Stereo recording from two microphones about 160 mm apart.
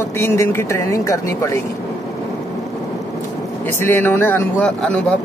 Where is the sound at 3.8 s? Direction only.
15° left (ahead or behind).